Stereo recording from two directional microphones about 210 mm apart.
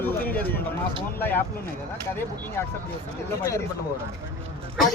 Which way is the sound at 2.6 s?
10° left (ahead or behind).